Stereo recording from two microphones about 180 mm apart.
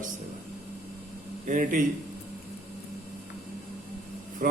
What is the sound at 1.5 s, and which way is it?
Speech, 45° right (ahead or behind).